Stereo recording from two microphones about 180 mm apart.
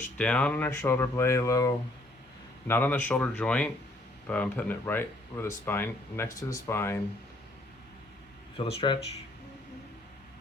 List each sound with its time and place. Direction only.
0.0 s speech: 5° left (ahead or behind)
8.5 s speech: 30° left (ahead or behind)